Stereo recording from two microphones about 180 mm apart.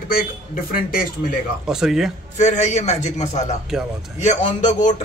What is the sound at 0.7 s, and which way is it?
Speech, 55° left (ahead or behind).